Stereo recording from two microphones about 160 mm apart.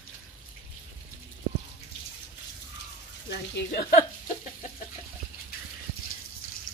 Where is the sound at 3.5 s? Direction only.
70° left (ahead or behind).